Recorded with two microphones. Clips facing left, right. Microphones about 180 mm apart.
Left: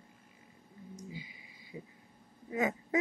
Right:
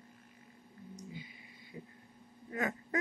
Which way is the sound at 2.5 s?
20° left (ahead or behind).